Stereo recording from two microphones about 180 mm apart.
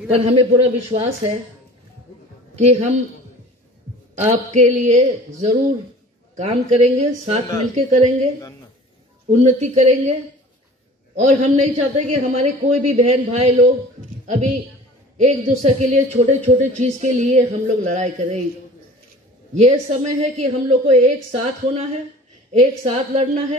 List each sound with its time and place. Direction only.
0.1 s a man's voice: 30° right (ahead or behind)
2.5 s a man's voice: 35° right (ahead or behind)
4.2 s a man's voice: 40° right (ahead or behind)
9.4 s a man's voice: 40° right (ahead or behind)
11.1 s a man's voice: 40° right (ahead or behind)
19.5 s a man's voice: 40° right (ahead or behind)